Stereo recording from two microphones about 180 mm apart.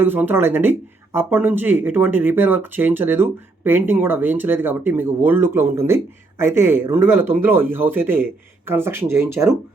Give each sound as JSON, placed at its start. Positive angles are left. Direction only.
{"t": 0.0, "sound": "speech", "side_deg": -10}